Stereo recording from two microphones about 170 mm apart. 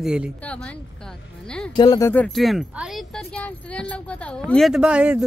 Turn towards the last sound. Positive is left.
turn(degrees=-5)  # may be behind; listen again after turning